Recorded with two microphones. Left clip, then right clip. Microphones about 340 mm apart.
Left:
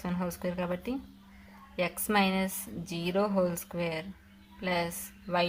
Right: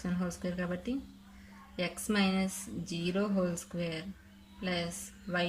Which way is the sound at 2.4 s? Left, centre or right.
Left.